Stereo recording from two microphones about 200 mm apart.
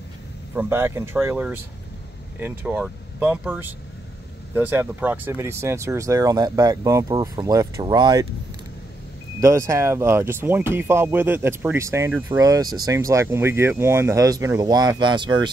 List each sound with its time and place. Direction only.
0.6 s speech: 10° right (ahead or behind)
9.4 s speech: 15° right (ahead or behind)